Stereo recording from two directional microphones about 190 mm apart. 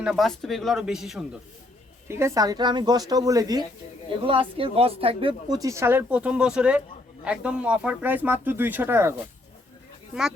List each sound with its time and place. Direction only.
0.0 s speech: centre (ahead or behind)
2.0 s a woman's voice: 15° right (ahead or behind)